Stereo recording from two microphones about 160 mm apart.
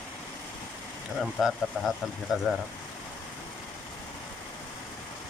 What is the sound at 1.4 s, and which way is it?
Speech, centre (ahead or behind).